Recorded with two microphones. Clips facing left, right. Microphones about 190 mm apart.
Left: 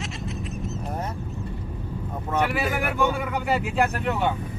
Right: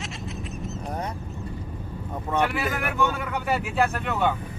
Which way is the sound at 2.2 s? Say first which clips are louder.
Even; 10° left (ahead or behind).